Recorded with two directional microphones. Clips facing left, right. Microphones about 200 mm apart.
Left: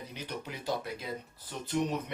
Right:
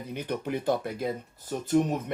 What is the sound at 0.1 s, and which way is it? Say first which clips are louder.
Speech: right 13 dB; 55° right (ahead or behind).